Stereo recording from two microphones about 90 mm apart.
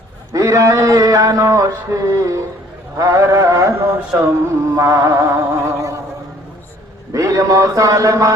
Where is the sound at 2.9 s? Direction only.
40° right (ahead or behind).